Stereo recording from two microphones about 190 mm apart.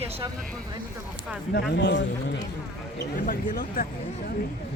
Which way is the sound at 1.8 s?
65° left (ahead or behind).